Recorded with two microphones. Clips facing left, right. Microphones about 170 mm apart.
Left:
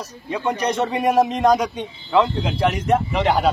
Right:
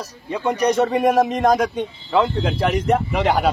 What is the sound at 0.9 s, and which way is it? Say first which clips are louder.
A man's voice: right 1 dB; centre (ahead or behind).